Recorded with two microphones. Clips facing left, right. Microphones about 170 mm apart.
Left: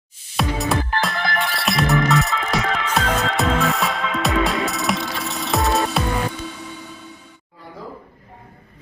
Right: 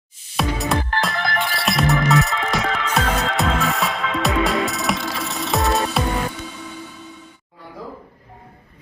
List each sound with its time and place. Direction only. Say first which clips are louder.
0.3 s music: even; centre (ahead or behind)